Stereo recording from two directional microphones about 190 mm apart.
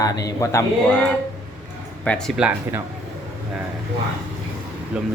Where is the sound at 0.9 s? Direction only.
5° left (ahead or behind).